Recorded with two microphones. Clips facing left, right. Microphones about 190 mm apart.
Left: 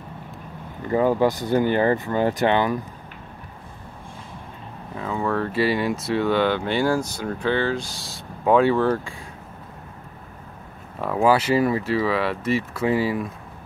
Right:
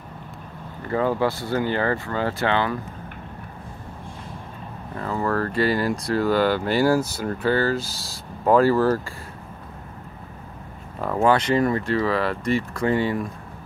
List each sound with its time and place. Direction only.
0.8 s speech: 15° left (ahead or behind)
4.9 s speech: centre (ahead or behind)
11.1 s speech: 5° left (ahead or behind)